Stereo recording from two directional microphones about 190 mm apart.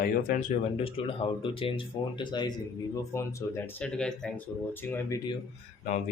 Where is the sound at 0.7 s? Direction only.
30° left (ahead or behind); by 5.2 s 10° left (ahead or behind).